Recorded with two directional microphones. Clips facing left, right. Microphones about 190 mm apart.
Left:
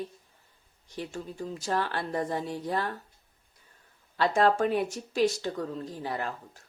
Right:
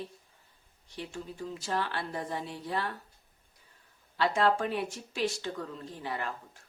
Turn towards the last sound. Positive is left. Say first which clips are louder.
# left 3 dB
turn(degrees=40)  # may be behind; listen again after turning